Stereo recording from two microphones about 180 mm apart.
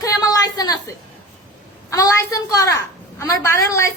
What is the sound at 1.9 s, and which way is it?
A woman's voice, 20° left (ahead or behind).